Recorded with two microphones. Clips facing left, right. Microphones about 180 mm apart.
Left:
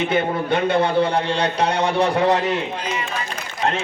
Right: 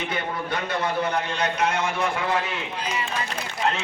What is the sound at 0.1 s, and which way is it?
A man's voice, 25° left (ahead or behind).